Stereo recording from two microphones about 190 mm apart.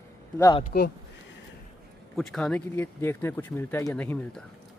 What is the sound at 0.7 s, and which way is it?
Speech, 50° left (ahead or behind).